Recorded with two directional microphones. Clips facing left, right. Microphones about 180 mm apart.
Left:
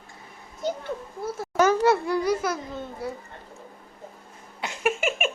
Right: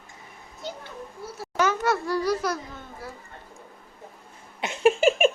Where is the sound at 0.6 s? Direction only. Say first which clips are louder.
Left 7 dB; 50° left (ahead or behind).